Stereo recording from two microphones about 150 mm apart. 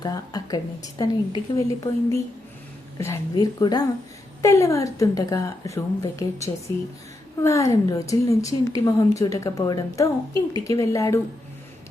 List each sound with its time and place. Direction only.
0.0 s a woman's voice: 25° left (ahead or behind)